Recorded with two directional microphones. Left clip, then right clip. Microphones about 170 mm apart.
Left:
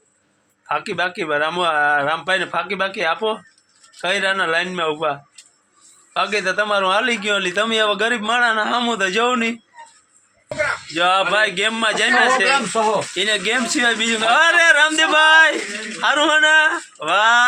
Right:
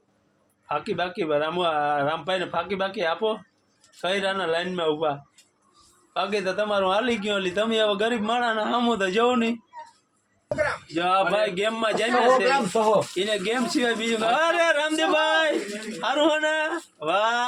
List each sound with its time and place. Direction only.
0.7 s a man's voice: 10° left (ahead or behind)
10.9 s a man's voice: 5° left (ahead or behind)
12.7 s speech: 15° right (ahead or behind)
13.1 s a man's voice: 5° left (ahead or behind)